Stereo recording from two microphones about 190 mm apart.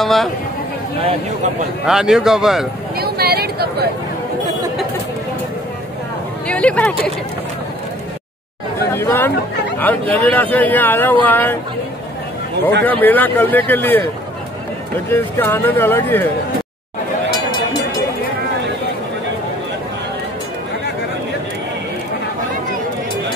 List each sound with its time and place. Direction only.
0.0 s speech: centre (ahead or behind)
1.9 s speech: centre (ahead or behind)
3.0 s a sound: 55° right (ahead or behind)
6.4 s speech: 5° left (ahead or behind)
8.9 s speech: 10° left (ahead or behind)
12.8 s speech: 10° left (ahead or behind)
15.0 s speech: 10° left (ahead or behind)